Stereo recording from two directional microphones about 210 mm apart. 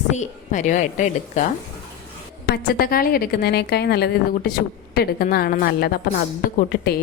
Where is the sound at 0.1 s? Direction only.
35° left (ahead or behind).